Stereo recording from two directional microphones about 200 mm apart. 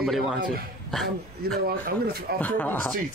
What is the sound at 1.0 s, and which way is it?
Speech, 50° right (ahead or behind).